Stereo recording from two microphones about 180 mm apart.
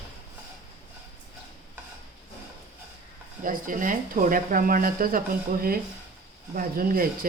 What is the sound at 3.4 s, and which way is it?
A woman's voice, 50° right (ahead or behind).